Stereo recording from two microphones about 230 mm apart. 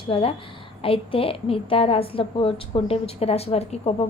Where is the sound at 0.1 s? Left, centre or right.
Left.